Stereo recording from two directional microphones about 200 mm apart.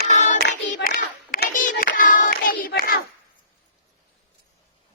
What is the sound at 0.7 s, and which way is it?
Hands, 45° left (ahead or behind).